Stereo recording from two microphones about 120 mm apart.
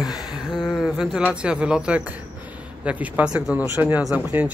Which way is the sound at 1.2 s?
10° right (ahead or behind).